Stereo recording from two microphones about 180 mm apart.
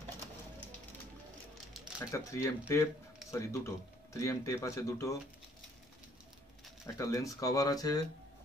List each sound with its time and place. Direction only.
2.0 s speech: 15° left (ahead or behind)
7.0 s speech: 20° left (ahead or behind)